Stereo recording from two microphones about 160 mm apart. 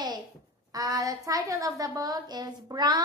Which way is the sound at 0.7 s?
20° right (ahead or behind).